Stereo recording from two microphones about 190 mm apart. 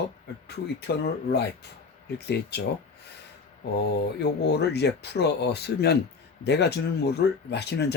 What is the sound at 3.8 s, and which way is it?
Speech, 60° left (ahead or behind).